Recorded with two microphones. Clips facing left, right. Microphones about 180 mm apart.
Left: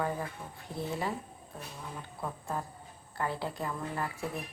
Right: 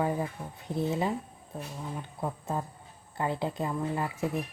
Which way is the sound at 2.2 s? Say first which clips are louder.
Right 4 dB; 20° right (ahead or behind).